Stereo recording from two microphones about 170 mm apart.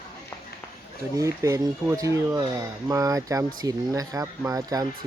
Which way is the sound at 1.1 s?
20° right (ahead or behind).